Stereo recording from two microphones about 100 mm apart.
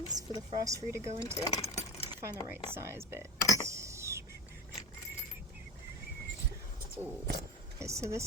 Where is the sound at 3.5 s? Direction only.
30° right (ahead or behind).